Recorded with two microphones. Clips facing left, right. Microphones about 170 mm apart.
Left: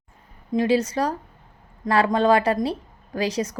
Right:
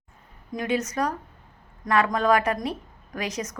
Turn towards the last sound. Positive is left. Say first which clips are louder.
# left 6 dB
turn(degrees=30)  # may be behind; listen again after turning